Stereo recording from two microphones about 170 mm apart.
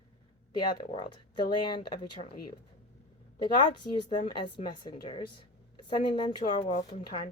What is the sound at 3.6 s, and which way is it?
Speech, 30° left (ahead or behind).